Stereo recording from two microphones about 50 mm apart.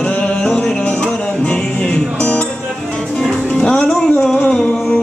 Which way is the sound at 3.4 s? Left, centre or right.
Left.